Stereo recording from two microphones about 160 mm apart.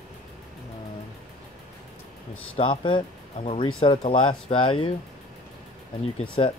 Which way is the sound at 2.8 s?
30° left (ahead or behind).